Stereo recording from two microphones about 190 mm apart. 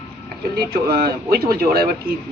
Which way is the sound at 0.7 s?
55° right (ahead or behind).